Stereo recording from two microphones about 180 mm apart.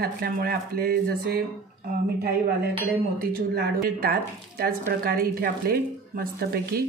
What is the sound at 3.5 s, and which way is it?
A woman's voice, 60° right (ahead or behind).